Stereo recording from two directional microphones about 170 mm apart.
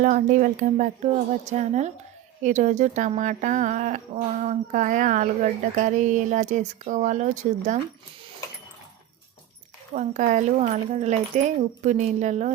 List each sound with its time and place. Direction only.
0.0 s speech: 50° right (ahead or behind)
9.9 s speech: 45° right (ahead or behind)